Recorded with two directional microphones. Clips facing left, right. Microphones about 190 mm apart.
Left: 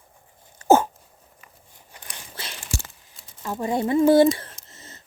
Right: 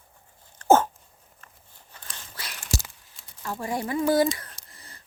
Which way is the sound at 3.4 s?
20° left (ahead or behind).